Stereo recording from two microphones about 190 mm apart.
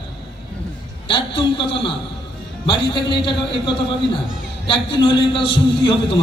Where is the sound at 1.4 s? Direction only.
25° left (ahead or behind).